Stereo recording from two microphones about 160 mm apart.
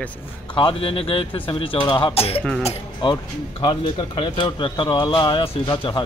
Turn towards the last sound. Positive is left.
turn(degrees=30)  # may be behind; listen again after turning